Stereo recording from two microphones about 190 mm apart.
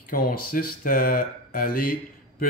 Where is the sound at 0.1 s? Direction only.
50° left (ahead or behind).